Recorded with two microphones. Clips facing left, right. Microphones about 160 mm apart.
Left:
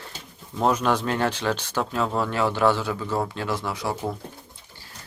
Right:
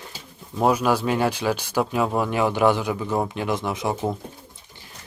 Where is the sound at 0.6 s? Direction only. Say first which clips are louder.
Right 2 dB; 10° right (ahead or behind).